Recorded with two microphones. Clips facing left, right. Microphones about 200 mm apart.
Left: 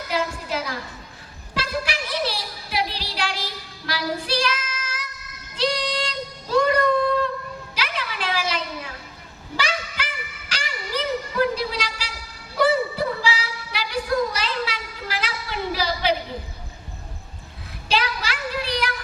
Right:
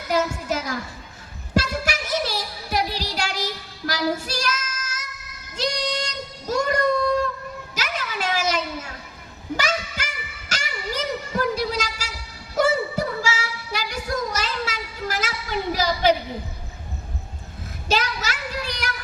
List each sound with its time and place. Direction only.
0.1 s a woman's voice: 45° right (ahead or behind)
1.5 s music: 45° right (ahead or behind)
7.8 s a sound: 45° right (ahead or behind)
10.5 s music: 45° right (ahead or behind)
12.5 s a sound: 45° right (ahead or behind)
17.8 s child singing: 45° right (ahead or behind)